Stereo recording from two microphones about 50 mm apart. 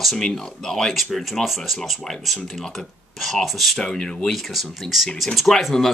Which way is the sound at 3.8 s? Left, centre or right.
Centre.